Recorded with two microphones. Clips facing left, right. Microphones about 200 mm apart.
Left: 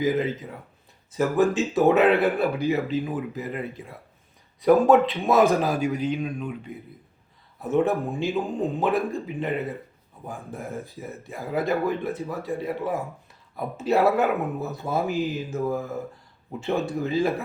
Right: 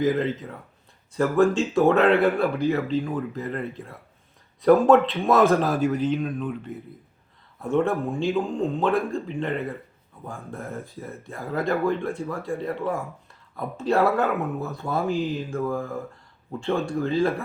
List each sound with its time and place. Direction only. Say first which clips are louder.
0.0 s speech: right 1 dB; 5° left (ahead or behind)